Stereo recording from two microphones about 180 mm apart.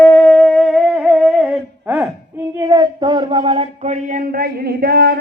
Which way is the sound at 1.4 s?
10° right (ahead or behind).